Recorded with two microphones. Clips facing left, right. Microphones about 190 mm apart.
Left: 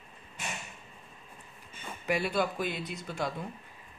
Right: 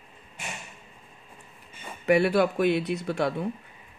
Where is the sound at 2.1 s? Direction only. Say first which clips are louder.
Right 9 dB; 65° right (ahead or behind).